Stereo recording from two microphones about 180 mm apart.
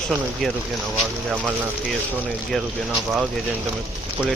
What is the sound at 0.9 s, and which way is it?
Speech, centre (ahead or behind).